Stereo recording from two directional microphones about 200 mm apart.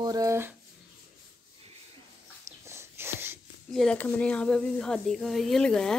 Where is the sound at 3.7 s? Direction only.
5° left (ahead or behind).